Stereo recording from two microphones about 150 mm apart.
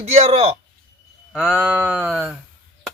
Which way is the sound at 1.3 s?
5° right (ahead or behind).